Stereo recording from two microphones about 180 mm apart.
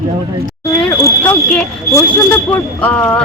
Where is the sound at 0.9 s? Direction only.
15° left (ahead or behind).